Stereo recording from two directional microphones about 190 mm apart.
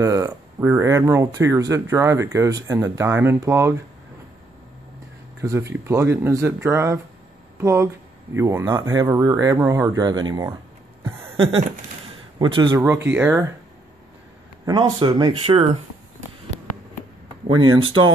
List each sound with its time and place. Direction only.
0.0 s speech: 15° right (ahead or behind)
5.4 s speech: 15° right (ahead or behind)
11.3 s a sound: 30° right (ahead or behind)
12.4 s speech: 25° right (ahead or behind)
12.7 s speech: 15° right (ahead or behind)
14.7 s speech: 20° right (ahead or behind)
17.6 s speech: 90° right